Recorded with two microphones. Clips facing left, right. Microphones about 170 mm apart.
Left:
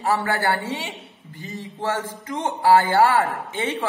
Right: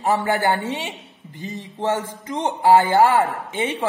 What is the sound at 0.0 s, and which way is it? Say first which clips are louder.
Speech: right 2 dB; 20° right (ahead or behind).